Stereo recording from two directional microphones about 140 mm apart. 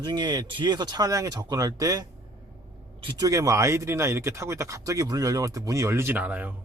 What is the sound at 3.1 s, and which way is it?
Speech, 25° right (ahead or behind).